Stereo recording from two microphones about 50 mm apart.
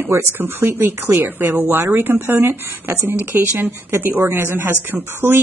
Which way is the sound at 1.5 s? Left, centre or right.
Right.